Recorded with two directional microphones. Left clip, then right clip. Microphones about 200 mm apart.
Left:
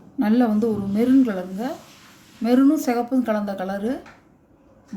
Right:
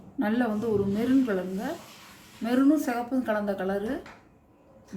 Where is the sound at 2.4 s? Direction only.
40° left (ahead or behind).